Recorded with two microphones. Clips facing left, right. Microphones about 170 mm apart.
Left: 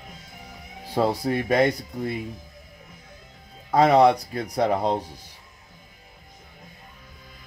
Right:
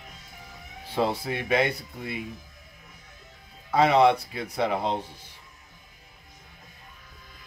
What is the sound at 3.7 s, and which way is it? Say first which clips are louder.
Speech: left 3 dB; 40° left (ahead or behind).